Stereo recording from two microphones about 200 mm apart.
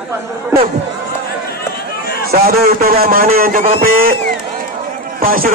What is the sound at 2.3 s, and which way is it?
A man's voice, 50° right (ahead or behind).